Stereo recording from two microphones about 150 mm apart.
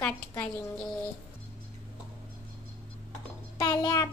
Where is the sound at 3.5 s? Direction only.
25° left (ahead or behind).